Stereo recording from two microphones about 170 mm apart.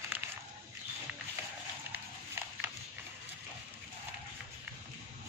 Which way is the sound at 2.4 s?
15° right (ahead or behind).